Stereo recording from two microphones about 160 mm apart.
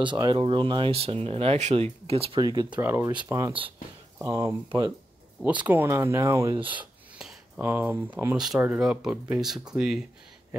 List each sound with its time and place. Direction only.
0.0 s speech: 30° right (ahead or behind)
2.7 s speech: 15° right (ahead or behind)
3.1 s speech: 25° right (ahead or behind)
5.7 s speech: 15° right (ahead or behind)
6.5 s speech: 35° right (ahead or behind)
6.8 s a sound: 5° right (ahead or behind)
8.4 s speech: 5° right (ahead or behind)